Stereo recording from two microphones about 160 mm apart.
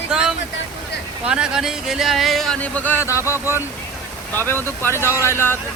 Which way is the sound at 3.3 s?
15° right (ahead or behind).